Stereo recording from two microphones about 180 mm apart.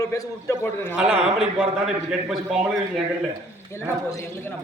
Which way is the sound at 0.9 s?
5° right (ahead or behind).